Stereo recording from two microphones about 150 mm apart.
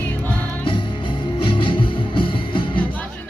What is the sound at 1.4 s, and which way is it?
Music, 35° left (ahead or behind).